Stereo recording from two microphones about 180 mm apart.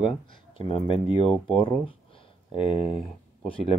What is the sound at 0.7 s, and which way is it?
Speech, 30° left (ahead or behind).